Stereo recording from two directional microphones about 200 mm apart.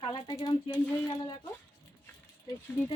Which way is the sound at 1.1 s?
20° left (ahead or behind).